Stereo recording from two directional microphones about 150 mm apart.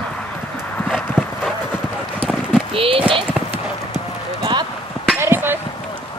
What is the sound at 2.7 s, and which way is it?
Clip-clop, 40° right (ahead or behind).